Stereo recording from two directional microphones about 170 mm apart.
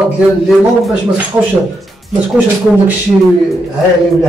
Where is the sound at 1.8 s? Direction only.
10° right (ahead or behind).